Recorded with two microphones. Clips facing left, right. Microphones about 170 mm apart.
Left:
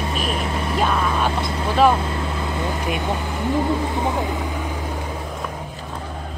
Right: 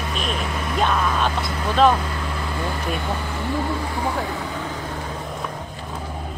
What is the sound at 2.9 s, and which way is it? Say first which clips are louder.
Speech: left 2 dB; 20° left (ahead or behind).